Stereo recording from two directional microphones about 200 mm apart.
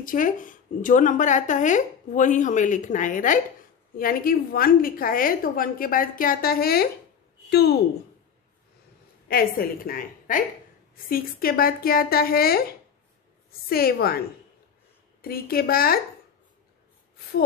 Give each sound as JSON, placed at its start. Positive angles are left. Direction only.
{"t": 0.0, "sound": "a woman's voice", "side_deg": 40}
{"t": 9.3, "sound": "a woman's voice", "side_deg": 45}
{"t": 15.2, "sound": "a woman's voice", "side_deg": 50}